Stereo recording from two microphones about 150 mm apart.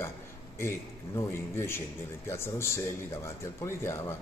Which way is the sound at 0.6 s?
15° left (ahead or behind).